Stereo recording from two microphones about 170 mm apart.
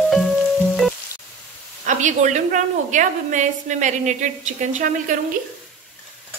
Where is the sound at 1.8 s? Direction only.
45° right (ahead or behind).